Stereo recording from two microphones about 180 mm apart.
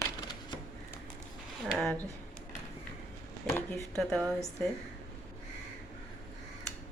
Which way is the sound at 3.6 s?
5° left (ahead or behind).